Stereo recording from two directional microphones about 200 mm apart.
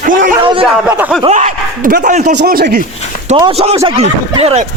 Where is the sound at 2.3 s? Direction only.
50° right (ahead or behind).